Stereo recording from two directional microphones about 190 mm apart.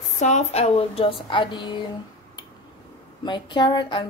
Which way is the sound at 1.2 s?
25° left (ahead or behind).